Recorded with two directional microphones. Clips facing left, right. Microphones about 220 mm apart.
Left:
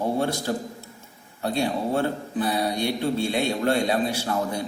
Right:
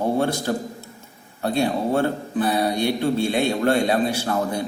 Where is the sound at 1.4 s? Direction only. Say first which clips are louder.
Right 3 dB; 50° right (ahead or behind).